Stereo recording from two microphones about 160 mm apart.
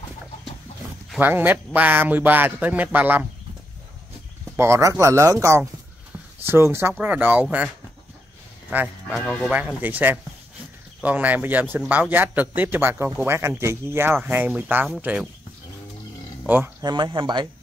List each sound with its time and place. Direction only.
1.2 s a man's voice: 10° right (ahead or behind)
4.6 s a man's voice: 15° right (ahead or behind)
8.6 s speech: 10° right (ahead or behind)
9.2 s speech: 10° left (ahead or behind)
9.5 s a man's voice: 10° right (ahead or behind)
16.4 s speech: 10° right (ahead or behind)
16.8 s speech: 30° right (ahead or behind)